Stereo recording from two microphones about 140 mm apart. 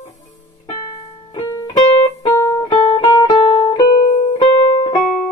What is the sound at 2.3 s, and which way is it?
Music, 20° left (ahead or behind).